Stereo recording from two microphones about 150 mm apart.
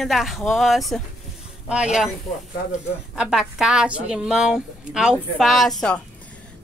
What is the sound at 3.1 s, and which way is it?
A woman's voice, 5° right (ahead or behind).